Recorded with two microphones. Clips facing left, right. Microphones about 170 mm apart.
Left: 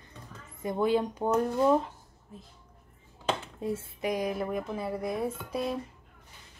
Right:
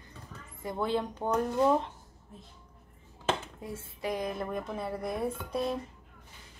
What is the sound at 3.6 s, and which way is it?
Speech, 20° left (ahead or behind).